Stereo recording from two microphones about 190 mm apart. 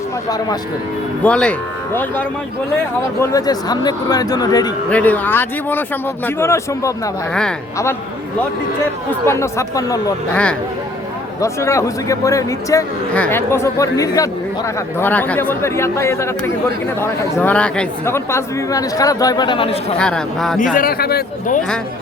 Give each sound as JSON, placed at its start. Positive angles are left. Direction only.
{"t": 0.3, "sound": "speech", "side_deg": 20}
{"t": 1.2, "sound": "speech", "side_deg": 5}
{"t": 4.9, "sound": "speech", "side_deg": 5}
{"t": 9.2, "sound": "speech", "side_deg": 15}
{"t": 11.3, "sound": "speech", "side_deg": 15}
{"t": 20.0, "sound": "speech", "side_deg": 5}
{"t": 20.7, "sound": "speech", "side_deg": 50}